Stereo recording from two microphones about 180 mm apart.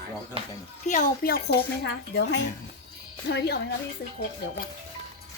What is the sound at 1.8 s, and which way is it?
Speech, 70° left (ahead or behind).